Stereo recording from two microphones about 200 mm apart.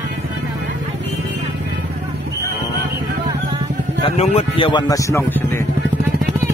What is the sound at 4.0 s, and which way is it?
Speech, 30° left (ahead or behind).